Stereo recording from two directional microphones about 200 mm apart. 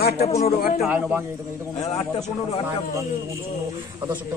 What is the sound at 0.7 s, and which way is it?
Speech, 5° right (ahead or behind).